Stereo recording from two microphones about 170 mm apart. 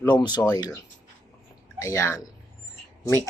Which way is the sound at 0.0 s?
25° left (ahead or behind).